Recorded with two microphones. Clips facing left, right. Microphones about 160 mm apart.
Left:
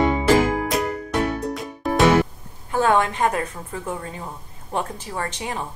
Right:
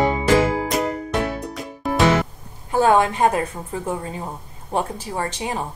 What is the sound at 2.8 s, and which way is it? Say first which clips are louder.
A woman's voice: right 3 dB; 20° right (ahead or behind).